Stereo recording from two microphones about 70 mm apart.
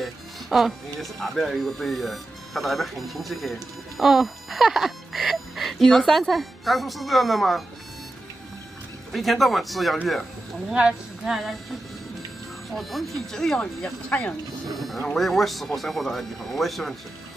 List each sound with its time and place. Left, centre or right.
0.0 s speech: centre
9.1 s speech: centre
10.7 s speech: centre
11.2 s speech: centre
12.7 s speech: centre
14.9 s speech: centre